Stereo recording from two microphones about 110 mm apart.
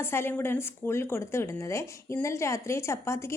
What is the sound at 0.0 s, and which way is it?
A woman's voice, 20° left (ahead or behind).